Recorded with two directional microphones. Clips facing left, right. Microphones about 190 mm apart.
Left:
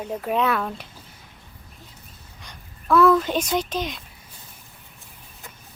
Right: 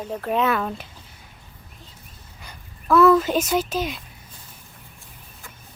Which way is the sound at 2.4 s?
5° right (ahead or behind).